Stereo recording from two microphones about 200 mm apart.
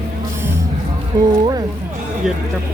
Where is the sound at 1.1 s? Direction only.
20° right (ahead or behind).